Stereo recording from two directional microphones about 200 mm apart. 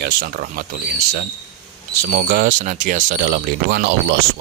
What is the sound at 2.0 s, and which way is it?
Speech, 50° right (ahead or behind).